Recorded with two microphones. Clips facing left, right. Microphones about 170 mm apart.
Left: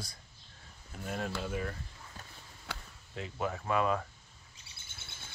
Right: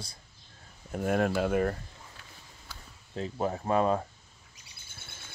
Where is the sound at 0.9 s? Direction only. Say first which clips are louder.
Right 11 dB; 60° right (ahead or behind).